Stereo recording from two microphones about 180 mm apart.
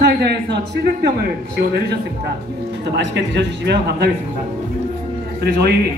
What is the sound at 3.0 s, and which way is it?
Speech, 70° right (ahead or behind).